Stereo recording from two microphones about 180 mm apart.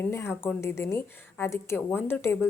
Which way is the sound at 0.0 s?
15° left (ahead or behind).